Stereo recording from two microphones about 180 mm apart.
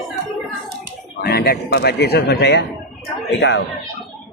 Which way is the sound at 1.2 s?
60° left (ahead or behind).